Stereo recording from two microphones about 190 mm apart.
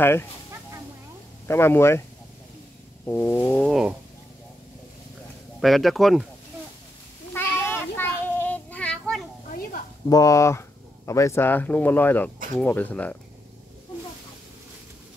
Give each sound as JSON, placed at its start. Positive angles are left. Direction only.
{"t": 0.0, "sound": "speech", "side_deg": 10}
{"t": 1.5, "sound": "speech", "side_deg": 15}
{"t": 3.1, "sound": "speech", "side_deg": 10}
{"t": 3.7, "sound": "speech", "side_deg": 0}
{"t": 5.6, "sound": "speech", "side_deg": 0}
{"t": 7.3, "sound": "child singing", "side_deg": 10}
{"t": 10.0, "sound": "speech", "side_deg": 20}